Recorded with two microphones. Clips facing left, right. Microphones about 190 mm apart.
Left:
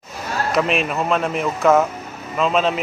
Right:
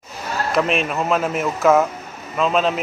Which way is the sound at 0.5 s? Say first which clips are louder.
Even; centre (ahead or behind).